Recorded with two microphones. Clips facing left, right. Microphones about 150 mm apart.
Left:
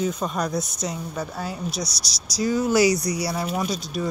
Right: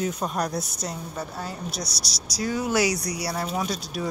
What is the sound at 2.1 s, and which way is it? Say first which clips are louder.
Speech: left 4 dB; 60° right (ahead or behind).